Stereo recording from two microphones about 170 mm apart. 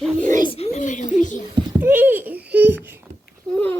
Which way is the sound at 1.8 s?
10° right (ahead or behind).